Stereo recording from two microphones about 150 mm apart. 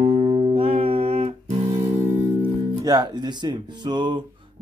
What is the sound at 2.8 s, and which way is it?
Speech, 25° right (ahead or behind).